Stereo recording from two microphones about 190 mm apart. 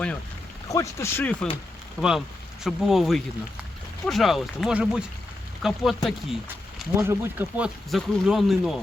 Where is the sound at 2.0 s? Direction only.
5° right (ahead or behind).